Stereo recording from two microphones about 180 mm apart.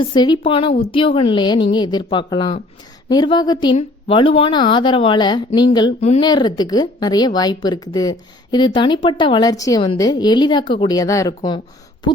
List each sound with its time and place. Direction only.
0.0 s speech: 25° left (ahead or behind)
6.0 s speech: 35° left (ahead or behind)
6.2 s speech: 25° left (ahead or behind)